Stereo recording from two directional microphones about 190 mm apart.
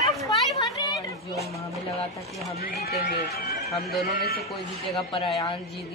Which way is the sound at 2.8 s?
55° left (ahead or behind).